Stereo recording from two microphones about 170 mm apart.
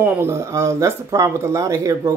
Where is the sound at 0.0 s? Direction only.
15° right (ahead or behind).